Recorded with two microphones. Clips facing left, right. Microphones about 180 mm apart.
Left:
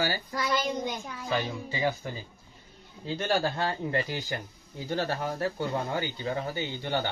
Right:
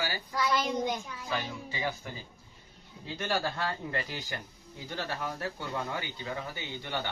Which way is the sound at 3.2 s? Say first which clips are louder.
Left 4 dB; 30° left (ahead or behind).